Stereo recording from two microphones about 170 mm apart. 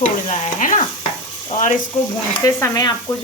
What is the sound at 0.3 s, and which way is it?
Stir, 50° left (ahead or behind).